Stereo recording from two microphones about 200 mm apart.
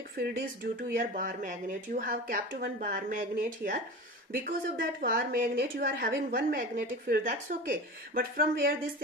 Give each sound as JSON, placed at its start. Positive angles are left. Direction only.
{"t": 0.2, "sound": "a woman's voice", "side_deg": -55}
{"t": 0.9, "sound": "a woman's voice", "side_deg": -40}